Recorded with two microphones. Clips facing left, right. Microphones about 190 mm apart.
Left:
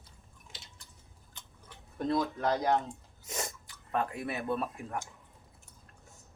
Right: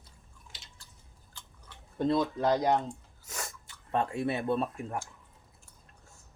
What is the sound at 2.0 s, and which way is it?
Speech, 25° right (ahead or behind).